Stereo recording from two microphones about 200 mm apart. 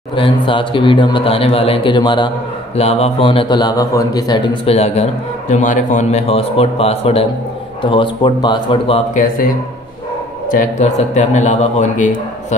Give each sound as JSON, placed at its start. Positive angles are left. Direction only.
{"t": 0.1, "sound": "speech", "side_deg": 25}
{"t": 10.5, "sound": "speech", "side_deg": 40}